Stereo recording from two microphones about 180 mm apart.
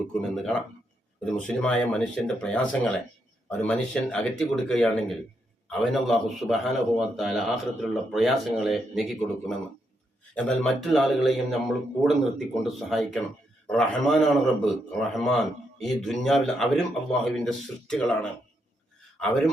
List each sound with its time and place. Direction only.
0.1 s a man's voice: 5° left (ahead or behind)